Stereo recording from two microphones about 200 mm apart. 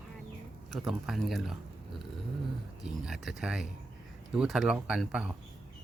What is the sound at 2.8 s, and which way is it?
Speech, centre (ahead or behind).